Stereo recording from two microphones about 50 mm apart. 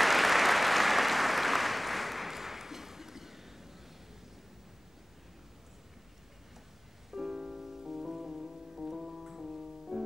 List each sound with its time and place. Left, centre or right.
0.0 s applause: centre
7.1 s music: centre